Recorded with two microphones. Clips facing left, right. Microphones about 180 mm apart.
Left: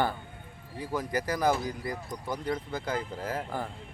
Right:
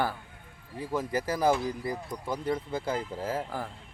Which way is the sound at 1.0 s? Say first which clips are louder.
Right 1 dB; 30° right (ahead or behind).